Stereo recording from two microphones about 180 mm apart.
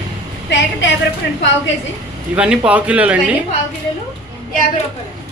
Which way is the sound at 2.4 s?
5° right (ahead or behind).